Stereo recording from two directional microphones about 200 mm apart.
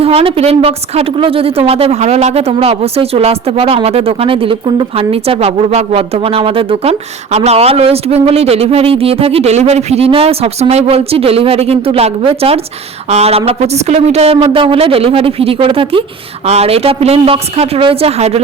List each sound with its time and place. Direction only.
0.0 s a woman's voice: 30° right (ahead or behind)